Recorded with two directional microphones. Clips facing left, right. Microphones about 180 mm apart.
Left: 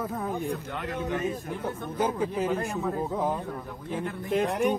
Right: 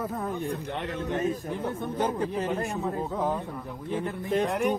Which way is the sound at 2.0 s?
Centre (ahead or behind).